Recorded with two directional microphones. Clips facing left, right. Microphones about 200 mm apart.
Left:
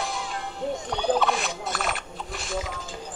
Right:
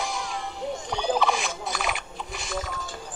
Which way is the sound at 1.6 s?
Centre (ahead or behind).